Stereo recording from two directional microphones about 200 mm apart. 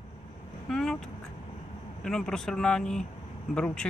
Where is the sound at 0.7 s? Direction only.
5° left (ahead or behind).